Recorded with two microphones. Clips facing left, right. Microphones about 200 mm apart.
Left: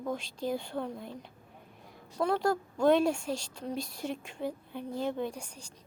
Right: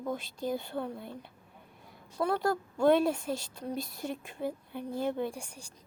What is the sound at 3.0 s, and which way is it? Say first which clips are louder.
Speech: even; 5° right (ahead or behind).